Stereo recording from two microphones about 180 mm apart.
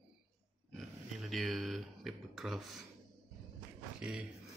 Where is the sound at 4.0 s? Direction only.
5° right (ahead or behind).